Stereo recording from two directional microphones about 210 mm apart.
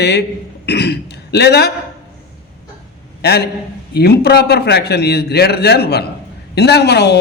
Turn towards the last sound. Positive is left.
turn(degrees=50)  # may be behind; listen again after turning